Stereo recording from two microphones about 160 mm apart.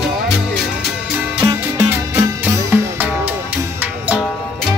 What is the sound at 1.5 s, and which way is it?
Music, 20° right (ahead or behind).